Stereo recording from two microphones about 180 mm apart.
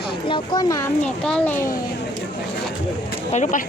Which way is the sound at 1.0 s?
5° left (ahead or behind).